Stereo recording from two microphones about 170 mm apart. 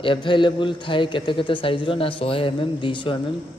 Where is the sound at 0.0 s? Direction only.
30° left (ahead or behind).